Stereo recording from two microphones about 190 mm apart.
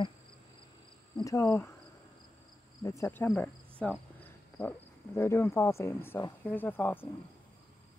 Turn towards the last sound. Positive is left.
turn(degrees=10)  # may be behind; listen again after turning